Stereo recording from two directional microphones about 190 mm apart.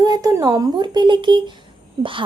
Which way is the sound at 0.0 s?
20° right (ahead or behind).